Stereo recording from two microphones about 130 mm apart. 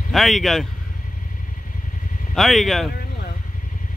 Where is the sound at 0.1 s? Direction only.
Centre (ahead or behind).